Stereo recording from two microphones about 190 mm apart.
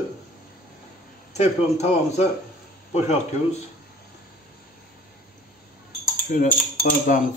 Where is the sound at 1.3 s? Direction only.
35° left (ahead or behind).